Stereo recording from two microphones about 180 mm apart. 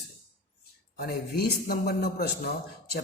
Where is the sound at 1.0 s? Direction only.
60° left (ahead or behind).